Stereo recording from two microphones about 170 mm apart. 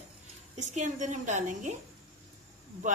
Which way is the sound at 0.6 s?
45° right (ahead or behind).